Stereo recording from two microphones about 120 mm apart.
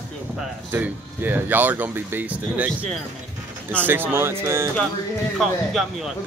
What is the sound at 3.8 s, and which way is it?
Speech, 15° right (ahead or behind).